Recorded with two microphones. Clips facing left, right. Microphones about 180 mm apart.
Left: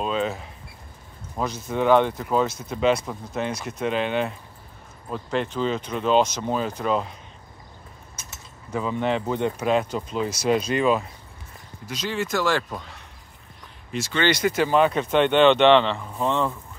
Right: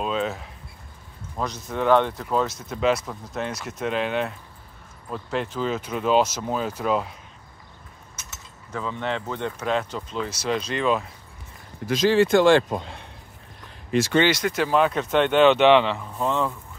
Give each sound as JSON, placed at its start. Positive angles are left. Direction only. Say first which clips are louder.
{"t": 0.0, "sound": "a sound", "louder": "left 1 dB", "side_deg": 0}
{"t": 1.3, "sound": "speech", "louder": "left 2 dB", "side_deg": 5}
{"t": 8.7, "sound": "speech", "louder": "left 4 dB", "side_deg": 15}
{"t": 11.9, "sound": "speech", "louder": "right 10 dB", "side_deg": -90}
{"t": 12.3, "sound": "speech", "louder": "right 7 dB", "side_deg": -25}
{"t": 14.2, "sound": "speech", "louder": "left 1 dB", "side_deg": 0}